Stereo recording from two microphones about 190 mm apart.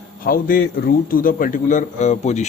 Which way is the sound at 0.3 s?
50° left (ahead or behind).